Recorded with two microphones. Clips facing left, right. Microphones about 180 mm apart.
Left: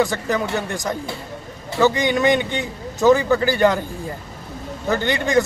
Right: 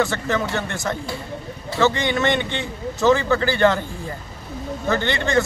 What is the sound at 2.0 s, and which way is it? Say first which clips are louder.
Speech: left 3 dB; 10° left (ahead or behind).